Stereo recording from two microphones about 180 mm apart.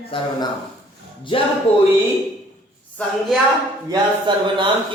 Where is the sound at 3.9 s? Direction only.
25° right (ahead or behind).